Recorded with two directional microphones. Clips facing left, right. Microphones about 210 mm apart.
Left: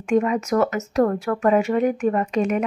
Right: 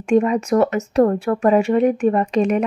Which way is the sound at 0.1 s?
30° right (ahead or behind).